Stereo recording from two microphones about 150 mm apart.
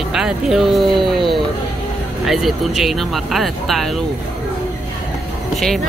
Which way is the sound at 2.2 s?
Centre (ahead or behind).